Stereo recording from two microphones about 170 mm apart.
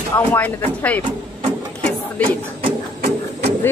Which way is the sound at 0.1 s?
10° left (ahead or behind).